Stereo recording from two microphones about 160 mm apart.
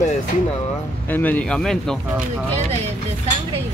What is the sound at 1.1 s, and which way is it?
Speech, 10° left (ahead or behind).